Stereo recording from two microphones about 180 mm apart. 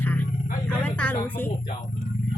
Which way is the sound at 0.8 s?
10° left (ahead or behind).